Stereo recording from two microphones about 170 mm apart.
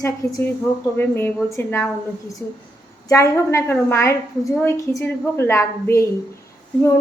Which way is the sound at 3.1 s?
15° left (ahead or behind).